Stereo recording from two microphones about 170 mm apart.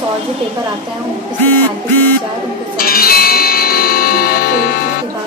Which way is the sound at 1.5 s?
10° left (ahead or behind).